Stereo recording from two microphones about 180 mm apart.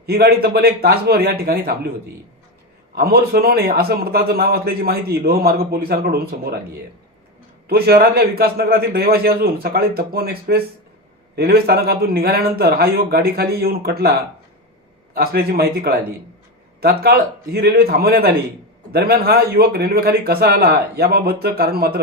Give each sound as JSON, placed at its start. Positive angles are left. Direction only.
{"t": 0.0, "sound": "a man's voice", "side_deg": -60}
{"t": 2.9, "sound": "a man's voice", "side_deg": -60}
{"t": 7.7, "sound": "a man's voice", "side_deg": -60}